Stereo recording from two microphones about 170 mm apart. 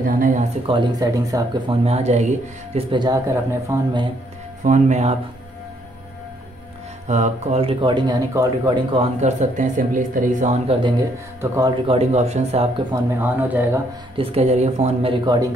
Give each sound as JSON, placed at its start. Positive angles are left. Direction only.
{"t": 0.0, "sound": "a sound", "side_deg": -50}
{"t": 0.7, "sound": "speech", "side_deg": -25}
{"t": 1.7, "sound": "speech", "side_deg": -35}
{"t": 2.7, "sound": "speech", "side_deg": -25}
{"t": 4.6, "sound": "speech", "side_deg": -45}
{"t": 7.1, "sound": "speech", "side_deg": -45}
{"t": 8.9, "sound": "speech", "side_deg": -40}
{"t": 10.8, "sound": "speech", "side_deg": -20}
{"t": 12.9, "sound": "speech", "side_deg": -15}
{"t": 14.1, "sound": "speech", "side_deg": -35}